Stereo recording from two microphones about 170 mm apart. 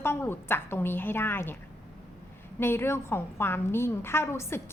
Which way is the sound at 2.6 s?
15° left (ahead or behind).